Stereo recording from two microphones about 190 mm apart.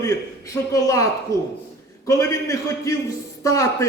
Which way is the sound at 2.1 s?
15° left (ahead or behind).